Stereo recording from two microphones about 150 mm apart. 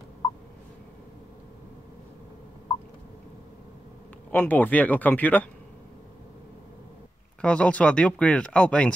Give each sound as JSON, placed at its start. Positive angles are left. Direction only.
{"t": 4.3, "sound": "speech", "side_deg": 10}
{"t": 7.4, "sound": "speech", "side_deg": 10}